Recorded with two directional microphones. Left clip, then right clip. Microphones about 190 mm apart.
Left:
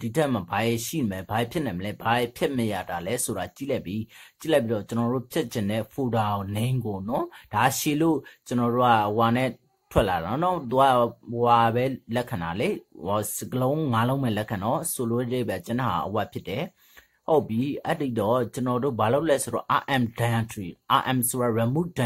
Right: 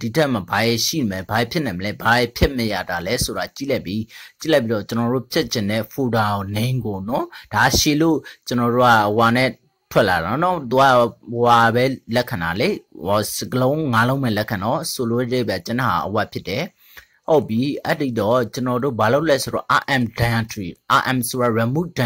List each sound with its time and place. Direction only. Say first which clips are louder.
0.0 s speech: right 6 dB; 15° right (ahead or behind)